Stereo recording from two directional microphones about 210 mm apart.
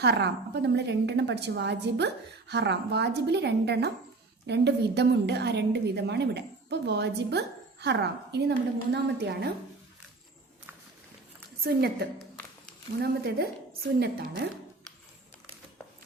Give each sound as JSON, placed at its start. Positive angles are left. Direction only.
{"t": 0.0, "sound": "a woman's voice", "side_deg": -55}
{"t": 11.6, "sound": "a woman's voice", "side_deg": -50}